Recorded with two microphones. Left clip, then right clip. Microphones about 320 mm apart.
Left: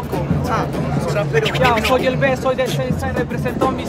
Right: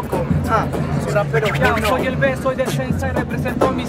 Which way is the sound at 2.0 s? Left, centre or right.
Left.